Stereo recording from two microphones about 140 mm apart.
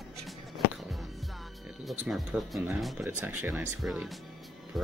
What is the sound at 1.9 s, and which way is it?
Speech, centre (ahead or behind).